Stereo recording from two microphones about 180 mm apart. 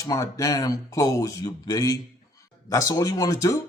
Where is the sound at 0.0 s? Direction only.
20° left (ahead or behind).